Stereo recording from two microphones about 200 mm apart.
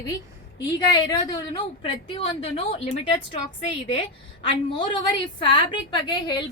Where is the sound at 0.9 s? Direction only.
20° left (ahead or behind).